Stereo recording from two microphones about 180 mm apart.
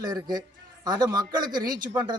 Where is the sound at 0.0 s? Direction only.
20° right (ahead or behind).